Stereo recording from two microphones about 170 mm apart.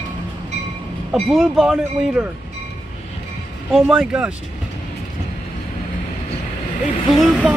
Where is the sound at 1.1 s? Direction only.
5° right (ahead or behind).